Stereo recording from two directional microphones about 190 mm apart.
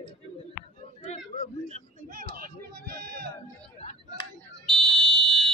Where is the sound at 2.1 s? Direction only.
50° right (ahead or behind).